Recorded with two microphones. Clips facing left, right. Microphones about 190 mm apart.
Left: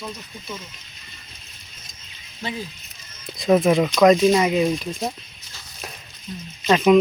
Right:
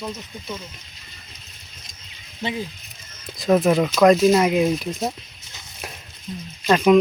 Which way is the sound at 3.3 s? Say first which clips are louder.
Left 1 dB; centre (ahead or behind).